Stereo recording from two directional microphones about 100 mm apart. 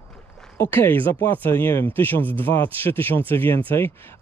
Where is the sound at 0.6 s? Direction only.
20° left (ahead or behind).